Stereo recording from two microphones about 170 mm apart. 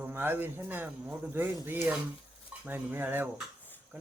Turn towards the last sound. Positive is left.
turn(degrees=-10)  # may be behind; listen again after turning